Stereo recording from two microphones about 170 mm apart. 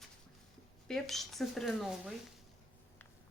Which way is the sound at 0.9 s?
Centre (ahead or behind).